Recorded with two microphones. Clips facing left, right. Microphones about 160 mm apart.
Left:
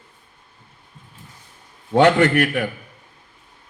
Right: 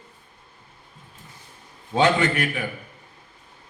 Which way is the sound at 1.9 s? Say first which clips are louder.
Left 6 dB; 65° left (ahead or behind).